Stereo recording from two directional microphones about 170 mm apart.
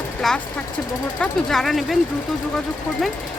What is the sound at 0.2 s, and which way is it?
Speech, centre (ahead or behind).